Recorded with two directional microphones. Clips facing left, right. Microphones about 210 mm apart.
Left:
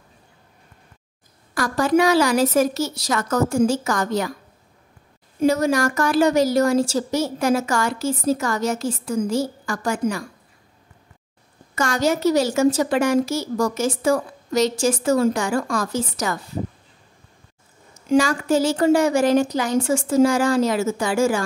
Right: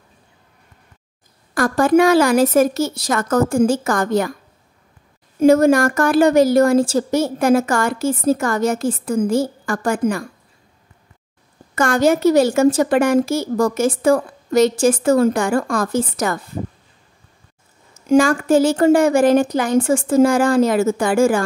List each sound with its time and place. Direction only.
1.5 s a woman's voice: 50° right (ahead or behind)
5.4 s a woman's voice: 50° right (ahead or behind)
11.7 s a woman's voice: 55° right (ahead or behind)
18.0 s a woman's voice: 50° right (ahead or behind)